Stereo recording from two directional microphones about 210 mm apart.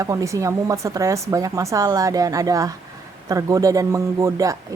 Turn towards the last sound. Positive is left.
turn(degrees=-15)  # may be behind; listen again after turning